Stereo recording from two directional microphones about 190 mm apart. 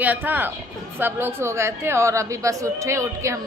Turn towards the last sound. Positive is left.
turn(degrees=-15)  # may be behind; listen again after turning